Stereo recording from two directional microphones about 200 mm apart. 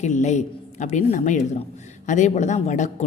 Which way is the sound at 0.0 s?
35° left (ahead or behind).